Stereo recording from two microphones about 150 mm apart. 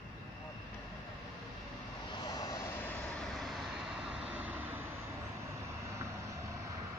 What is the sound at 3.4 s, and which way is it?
Vehicle, centre (ahead or behind).